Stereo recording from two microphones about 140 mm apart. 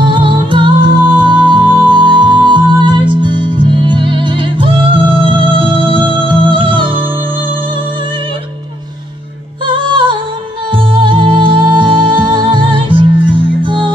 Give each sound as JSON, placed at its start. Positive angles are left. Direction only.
{"t": 0.0, "sound": "music", "side_deg": -35}
{"t": 9.8, "sound": "music", "side_deg": -35}